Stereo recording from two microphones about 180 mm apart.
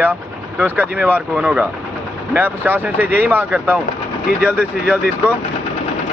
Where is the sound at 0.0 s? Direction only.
10° right (ahead or behind).